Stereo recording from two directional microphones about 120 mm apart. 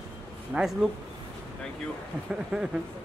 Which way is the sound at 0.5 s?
5° right (ahead or behind).